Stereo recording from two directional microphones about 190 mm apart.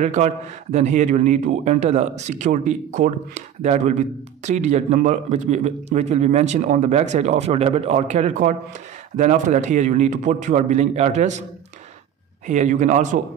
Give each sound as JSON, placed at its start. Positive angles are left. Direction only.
{"t": 0.0, "sound": "a man's voice", "side_deg": -40}
{"t": 12.4, "sound": "a man's voice", "side_deg": -40}